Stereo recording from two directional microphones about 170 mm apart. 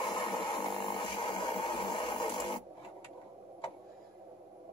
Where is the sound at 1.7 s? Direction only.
25° left (ahead or behind).